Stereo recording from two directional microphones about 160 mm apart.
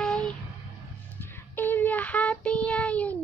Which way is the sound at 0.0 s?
5° left (ahead or behind).